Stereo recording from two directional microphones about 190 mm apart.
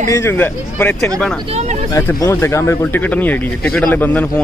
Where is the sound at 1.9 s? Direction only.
15° left (ahead or behind).